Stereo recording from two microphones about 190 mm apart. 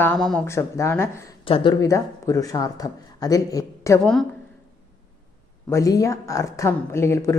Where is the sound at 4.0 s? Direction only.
5° left (ahead or behind).